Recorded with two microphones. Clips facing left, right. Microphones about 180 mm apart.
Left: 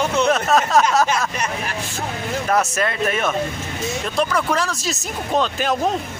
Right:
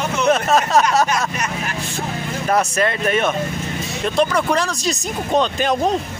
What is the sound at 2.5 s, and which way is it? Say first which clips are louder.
Speech: right 3 dB; centre (ahead or behind).